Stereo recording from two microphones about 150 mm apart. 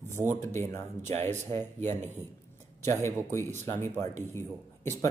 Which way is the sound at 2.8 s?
15° left (ahead or behind).